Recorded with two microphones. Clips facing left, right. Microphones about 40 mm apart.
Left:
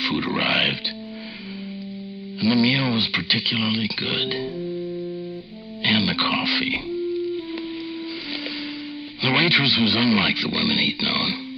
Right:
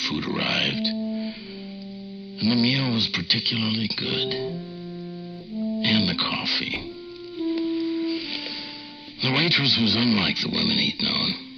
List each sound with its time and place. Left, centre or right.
0.0 s speech: centre
2.4 s speech: left
5.8 s speech: centre
7.3 s music: centre
9.2 s speech: left